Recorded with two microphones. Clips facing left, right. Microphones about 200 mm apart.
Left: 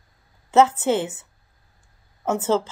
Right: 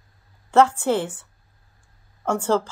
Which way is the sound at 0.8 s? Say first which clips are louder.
Even; 5° left (ahead or behind).